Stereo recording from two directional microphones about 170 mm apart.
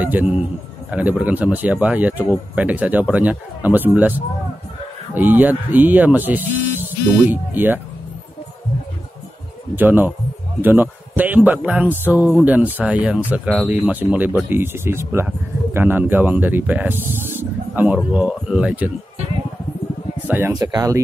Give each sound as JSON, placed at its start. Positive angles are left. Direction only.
{"t": 0.0, "sound": "speech", "side_deg": -10}
{"t": 5.1, "sound": "speech", "side_deg": -10}
{"t": 9.8, "sound": "speech", "side_deg": -10}
{"t": 20.2, "sound": "speech", "side_deg": -15}